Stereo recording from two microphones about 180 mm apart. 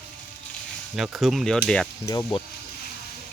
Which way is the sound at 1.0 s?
Centre (ahead or behind).